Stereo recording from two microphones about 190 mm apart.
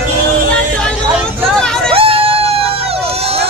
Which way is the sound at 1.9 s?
30° right (ahead or behind).